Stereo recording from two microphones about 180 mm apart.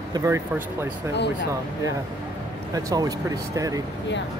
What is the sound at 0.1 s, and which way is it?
Speech, 15° right (ahead or behind).